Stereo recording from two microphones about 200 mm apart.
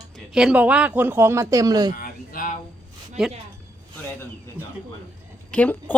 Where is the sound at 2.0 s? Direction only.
45° left (ahead or behind).